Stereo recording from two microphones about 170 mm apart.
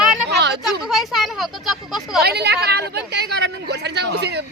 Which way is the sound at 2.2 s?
70° right (ahead or behind).